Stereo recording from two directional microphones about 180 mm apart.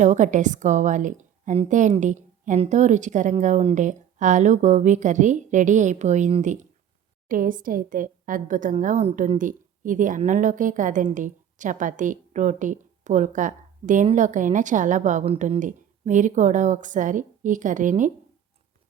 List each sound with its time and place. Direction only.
0.0 s speech: 45° right (ahead or behind)